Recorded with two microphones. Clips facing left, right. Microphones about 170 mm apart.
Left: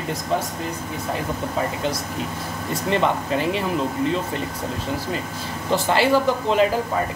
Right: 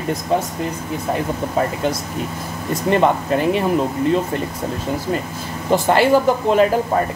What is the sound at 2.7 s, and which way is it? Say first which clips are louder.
Speech: right 5 dB; 50° right (ahead or behind).